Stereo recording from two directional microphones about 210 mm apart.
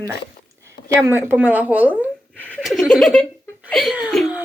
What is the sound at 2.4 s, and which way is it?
Laughter, 5° left (ahead or behind).